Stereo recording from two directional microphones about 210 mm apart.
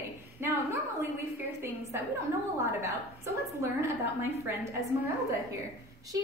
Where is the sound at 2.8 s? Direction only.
15° right (ahead or behind).